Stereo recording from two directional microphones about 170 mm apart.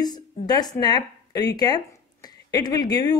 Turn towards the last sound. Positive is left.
turn(degrees=25)  # may be behind; listen again after turning